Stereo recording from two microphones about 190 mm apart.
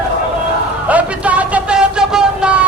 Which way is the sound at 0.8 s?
5° right (ahead or behind).